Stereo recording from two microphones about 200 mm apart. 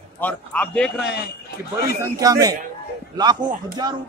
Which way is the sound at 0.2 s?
5° left (ahead or behind).